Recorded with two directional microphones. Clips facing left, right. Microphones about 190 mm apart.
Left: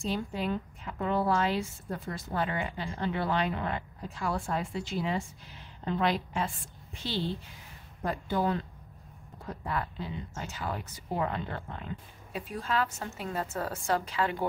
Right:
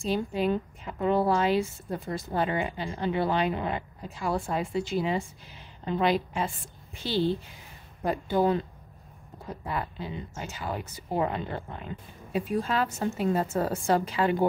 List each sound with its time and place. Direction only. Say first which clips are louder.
0.1 s a woman's voice: right 7 dB; 15° right (ahead or behind)
9.7 s a woman's voice: right 1 dB; 10° right (ahead or behind); by 13.9 s 30° right (ahead or behind)
13.9 s speech: right 4 dB; 15° right (ahead or behind)